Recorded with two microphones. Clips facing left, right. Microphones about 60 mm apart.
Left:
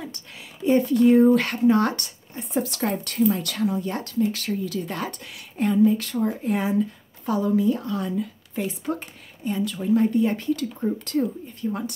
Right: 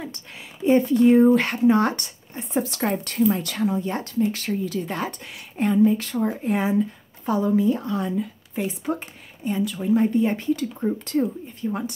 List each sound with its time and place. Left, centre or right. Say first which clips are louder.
0.0 s speech: right 2 dB; right